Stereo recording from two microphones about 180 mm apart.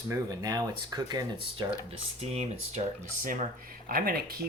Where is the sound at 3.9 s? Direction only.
55° right (ahead or behind).